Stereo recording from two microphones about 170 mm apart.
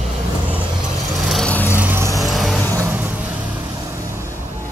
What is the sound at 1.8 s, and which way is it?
Vehicle, 15° right (ahead or behind).